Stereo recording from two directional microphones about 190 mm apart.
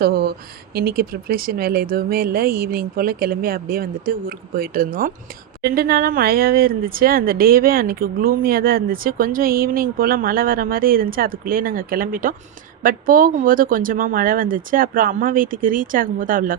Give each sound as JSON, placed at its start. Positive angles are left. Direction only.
{"t": 0.0, "sound": "speech", "side_deg": -55}